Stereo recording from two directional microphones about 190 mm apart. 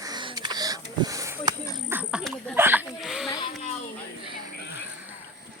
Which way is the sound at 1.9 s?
5° right (ahead or behind).